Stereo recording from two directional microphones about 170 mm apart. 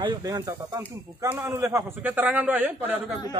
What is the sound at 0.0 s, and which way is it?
A man's voice, 25° right (ahead or behind).